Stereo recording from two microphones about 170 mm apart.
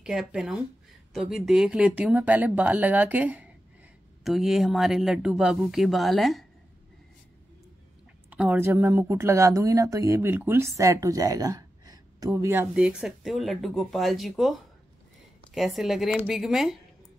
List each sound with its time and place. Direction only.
0.0 s speech: 5° right (ahead or behind)
8.3 s speech: 10° right (ahead or behind)
12.8 s speech: 5° right (ahead or behind)